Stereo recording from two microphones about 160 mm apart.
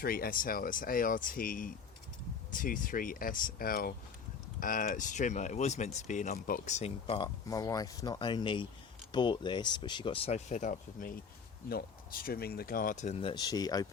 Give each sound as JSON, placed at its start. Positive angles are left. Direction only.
{"t": 0.0, "sound": "speech", "side_deg": 65}
{"t": 7.4, "sound": "speech", "side_deg": 20}
{"t": 11.7, "sound": "speech", "side_deg": 70}
{"t": 13.3, "sound": "speech", "side_deg": 25}